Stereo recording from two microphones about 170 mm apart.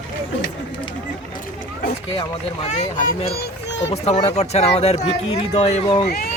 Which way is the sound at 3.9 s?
40° left (ahead or behind).